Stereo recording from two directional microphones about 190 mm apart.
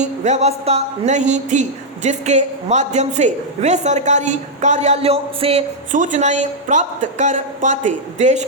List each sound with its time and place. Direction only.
0.0 s speech: 35° right (ahead or behind)